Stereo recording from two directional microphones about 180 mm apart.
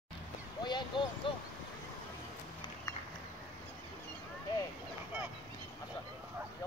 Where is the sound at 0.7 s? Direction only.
25° left (ahead or behind).